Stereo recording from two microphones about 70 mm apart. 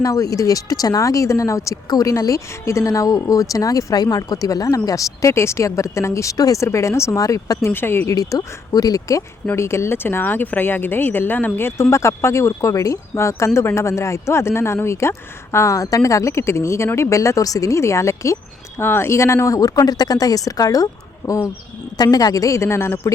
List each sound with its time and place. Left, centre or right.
0.0 s speech: left
6.3 s speech: left
6.6 s speech: left
7.6 s speech: left
8.1 s speech: left
9.6 s speech: left
18.8 s speech: left
21.9 s speech: left